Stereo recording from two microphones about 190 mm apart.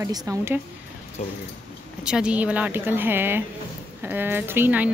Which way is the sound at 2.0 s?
5° right (ahead or behind).